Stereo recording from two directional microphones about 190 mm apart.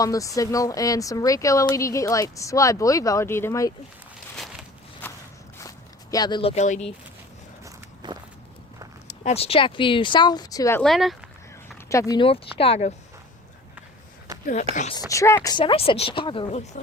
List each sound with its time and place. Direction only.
0.0 s speech: 15° left (ahead or behind)
5.5 s zipper: 20° left (ahead or behind); by 6.9 s 35° left (ahead or behind)
7.6 s walk: 20° right (ahead or behind)
9.2 s speech: 30° left (ahead or behind); by 10.8 s 15° left (ahead or behind)
10.8 s speech: centre (ahead or behind)
11.9 s speech: 15° left (ahead or behind)
14.4 s speech: 40° left (ahead or behind)
14.9 s speech: 15° left (ahead or behind); by 16.8 s 35° left (ahead or behind)